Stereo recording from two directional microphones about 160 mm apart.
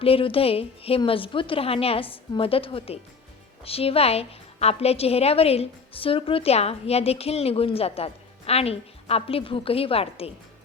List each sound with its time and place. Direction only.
0.0 s a woman's voice: 35° left (ahead or behind)